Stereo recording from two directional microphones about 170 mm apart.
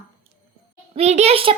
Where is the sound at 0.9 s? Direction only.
40° right (ahead or behind).